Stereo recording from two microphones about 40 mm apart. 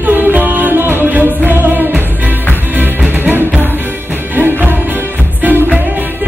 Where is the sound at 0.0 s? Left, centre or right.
Right.